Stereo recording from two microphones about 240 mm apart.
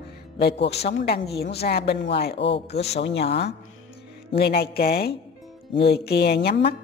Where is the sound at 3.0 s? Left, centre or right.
Left.